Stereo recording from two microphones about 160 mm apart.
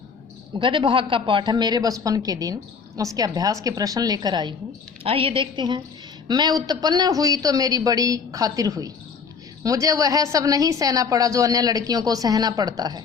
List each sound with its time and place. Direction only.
0.6 s a man's voice: 30° right (ahead or behind)
5.0 s a woman's voice: 35° right (ahead or behind)